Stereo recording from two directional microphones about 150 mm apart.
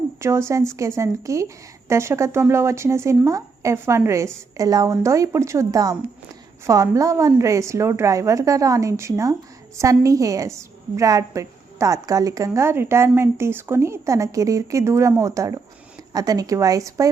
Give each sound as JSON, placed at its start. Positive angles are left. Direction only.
{"t": 0.2, "sound": "a woman's voice", "side_deg": -20}